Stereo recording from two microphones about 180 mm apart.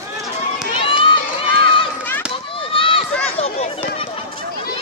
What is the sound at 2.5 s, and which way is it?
Chop, 30° left (ahead or behind).